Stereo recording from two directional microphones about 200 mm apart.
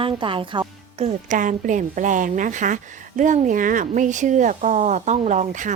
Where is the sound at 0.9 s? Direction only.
35° right (ahead or behind).